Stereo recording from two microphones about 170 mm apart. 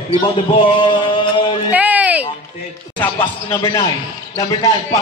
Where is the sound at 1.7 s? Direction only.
10° right (ahead or behind).